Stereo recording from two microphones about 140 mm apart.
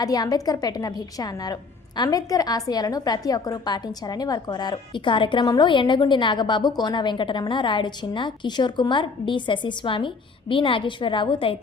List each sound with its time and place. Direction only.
0.0 s a woman's voice: 25° left (ahead or behind)